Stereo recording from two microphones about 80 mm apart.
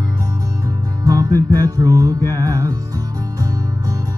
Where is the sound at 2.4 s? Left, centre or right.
Right.